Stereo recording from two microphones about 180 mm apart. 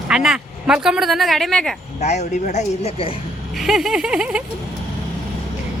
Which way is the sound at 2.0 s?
40° left (ahead or behind).